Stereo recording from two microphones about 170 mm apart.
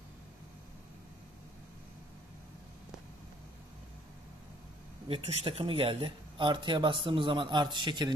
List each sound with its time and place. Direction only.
5.0 s speech: 35° right (ahead or behind)